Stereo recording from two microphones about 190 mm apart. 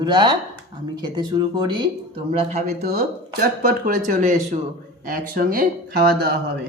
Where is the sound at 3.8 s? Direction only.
50° right (ahead or behind).